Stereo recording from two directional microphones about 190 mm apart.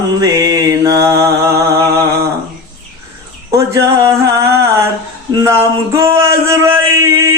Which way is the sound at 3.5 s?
15° right (ahead or behind).